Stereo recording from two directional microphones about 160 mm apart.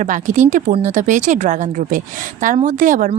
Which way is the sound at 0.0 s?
50° right (ahead or behind).